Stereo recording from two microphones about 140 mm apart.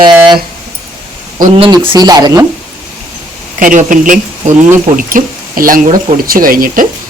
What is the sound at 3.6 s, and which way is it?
Speech, 70° right (ahead or behind).